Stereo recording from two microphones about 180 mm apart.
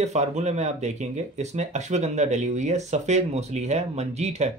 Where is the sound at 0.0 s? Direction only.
40° right (ahead or behind).